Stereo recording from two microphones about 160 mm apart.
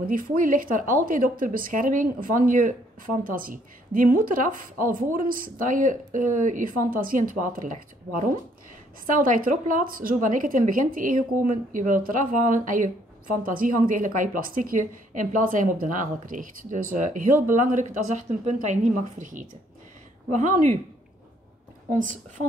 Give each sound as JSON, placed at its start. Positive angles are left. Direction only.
{"t": 0.1, "sound": "a woman's voice", "side_deg": -60}